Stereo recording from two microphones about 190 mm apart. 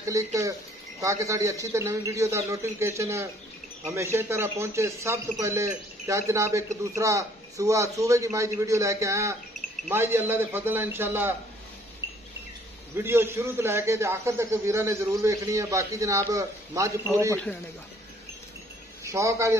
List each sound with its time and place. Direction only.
0.0 s a man's voice: 15° right (ahead or behind)
12.9 s a man's voice: 10° right (ahead or behind)
19.0 s a man's voice: 15° right (ahead or behind)